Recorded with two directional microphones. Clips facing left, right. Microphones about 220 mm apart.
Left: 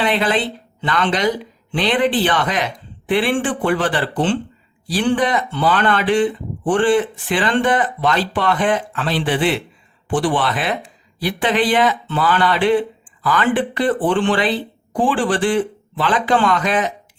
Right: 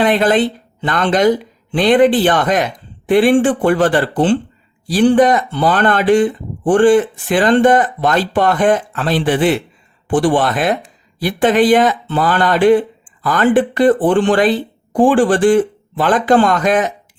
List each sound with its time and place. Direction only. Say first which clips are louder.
0.0 s speech: right 6 dB; 45° right (ahead or behind)